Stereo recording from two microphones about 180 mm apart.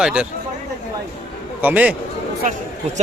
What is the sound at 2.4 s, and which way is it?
Speech, 45° right (ahead or behind).